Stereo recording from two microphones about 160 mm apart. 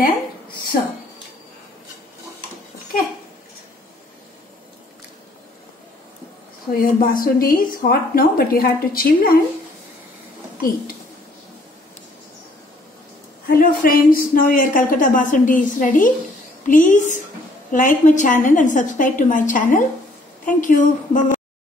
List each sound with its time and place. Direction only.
0.7 s a woman's voice: 60° left (ahead or behind)
6.7 s a woman's voice: 65° left (ahead or behind)
13.5 s a woman's voice: 60° left (ahead or behind)